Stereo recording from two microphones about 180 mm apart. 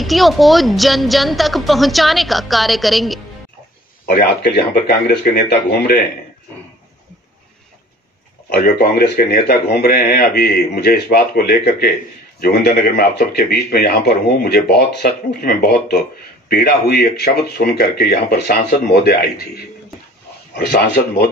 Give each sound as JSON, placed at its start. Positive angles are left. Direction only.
{"t": 0.0, "sound": "a woman's voice", "side_deg": 0}
{"t": 4.1, "sound": "speech", "side_deg": 60}
{"t": 8.5, "sound": "speech", "side_deg": 60}